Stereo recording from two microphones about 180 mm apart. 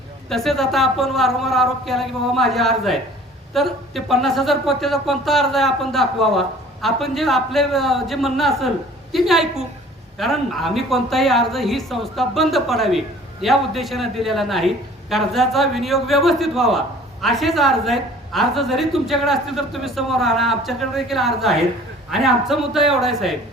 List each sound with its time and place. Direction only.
0.3 s a man's voice: centre (ahead or behind)